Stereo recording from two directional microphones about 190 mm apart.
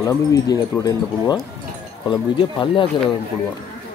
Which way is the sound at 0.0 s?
15° left (ahead or behind).